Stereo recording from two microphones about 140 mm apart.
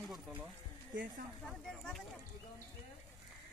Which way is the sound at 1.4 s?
Centre (ahead or behind).